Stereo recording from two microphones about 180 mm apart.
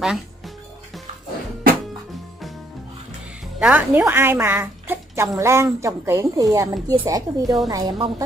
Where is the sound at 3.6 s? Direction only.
10° right (ahead or behind); by 8.2 s 25° right (ahead or behind).